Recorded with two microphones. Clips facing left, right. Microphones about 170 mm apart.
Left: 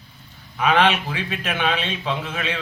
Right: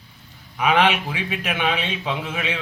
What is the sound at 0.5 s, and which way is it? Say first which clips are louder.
A man's voice: even; 10° right (ahead or behind).